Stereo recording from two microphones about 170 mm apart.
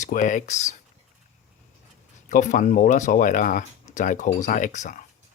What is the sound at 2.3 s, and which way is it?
Speech, 50° left (ahead or behind).